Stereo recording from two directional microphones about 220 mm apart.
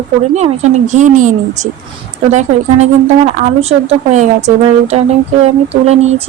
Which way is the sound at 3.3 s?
30° right (ahead or behind).